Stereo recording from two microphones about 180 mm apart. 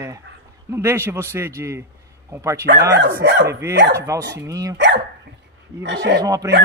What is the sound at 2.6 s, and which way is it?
Speech, 65° right (ahead or behind).